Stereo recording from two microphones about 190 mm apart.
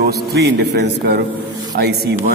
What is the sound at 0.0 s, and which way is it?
Mantra, 60° right (ahead or behind).